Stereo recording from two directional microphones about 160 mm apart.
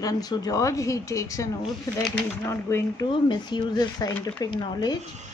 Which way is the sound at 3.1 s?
30° left (ahead or behind).